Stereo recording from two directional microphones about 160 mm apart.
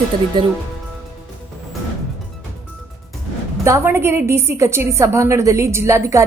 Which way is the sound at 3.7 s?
15° right (ahead or behind).